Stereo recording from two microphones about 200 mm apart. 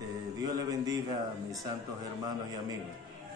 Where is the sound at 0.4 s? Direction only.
20° right (ahead or behind).